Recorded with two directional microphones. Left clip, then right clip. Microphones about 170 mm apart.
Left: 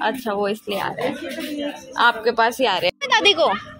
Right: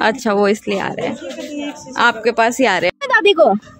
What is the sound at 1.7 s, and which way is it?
Speech, 70° right (ahead or behind).